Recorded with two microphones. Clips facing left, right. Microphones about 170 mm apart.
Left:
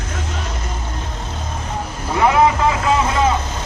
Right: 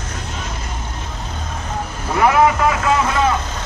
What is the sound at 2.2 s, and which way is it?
Vehicle, 25° left (ahead or behind).